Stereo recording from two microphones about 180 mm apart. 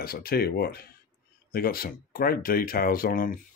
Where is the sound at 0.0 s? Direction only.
55° left (ahead or behind).